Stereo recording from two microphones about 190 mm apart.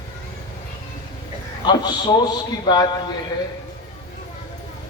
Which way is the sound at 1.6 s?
20° left (ahead or behind).